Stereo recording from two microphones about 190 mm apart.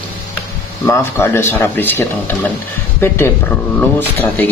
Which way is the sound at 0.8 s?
15° left (ahead or behind).